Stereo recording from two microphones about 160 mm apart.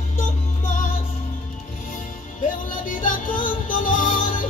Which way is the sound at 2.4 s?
55° left (ahead or behind).